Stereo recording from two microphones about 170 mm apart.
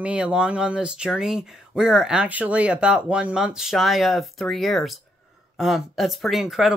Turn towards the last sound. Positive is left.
turn(degrees=0)  # may be behind; listen again after turning